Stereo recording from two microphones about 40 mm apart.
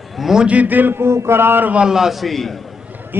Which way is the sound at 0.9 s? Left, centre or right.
Right.